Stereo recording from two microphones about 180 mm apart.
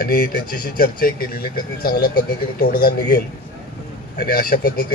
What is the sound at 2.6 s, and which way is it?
Speech, 55° left (ahead or behind).